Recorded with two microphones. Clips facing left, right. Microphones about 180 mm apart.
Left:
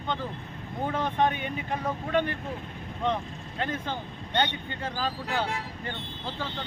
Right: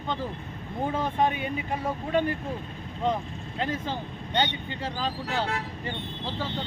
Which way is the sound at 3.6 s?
5° right (ahead or behind).